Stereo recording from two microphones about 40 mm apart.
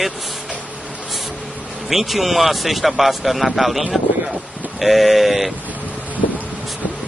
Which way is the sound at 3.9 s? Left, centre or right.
Centre.